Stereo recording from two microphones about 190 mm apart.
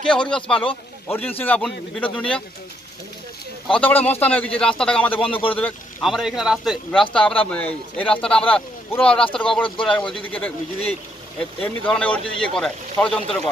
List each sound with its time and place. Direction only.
0.1 s a man's voice: 5° left (ahead or behind)
3.6 s a man's voice: 5° left (ahead or behind)
5.2 s speech: 30° left (ahead or behind)
5.6 s a man's voice: centre (ahead or behind)
11.3 s a man's voice: 5° left (ahead or behind)